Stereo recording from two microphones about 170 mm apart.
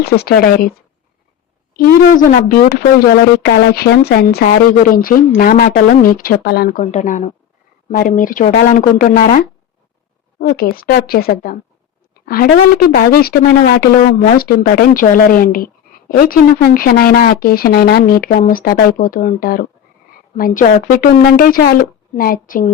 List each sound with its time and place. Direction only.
0.0 s a woman's voice: 65° left (ahead or behind)
1.7 s a woman's voice: 60° left (ahead or behind)
10.4 s a woman's voice: 65° left (ahead or behind)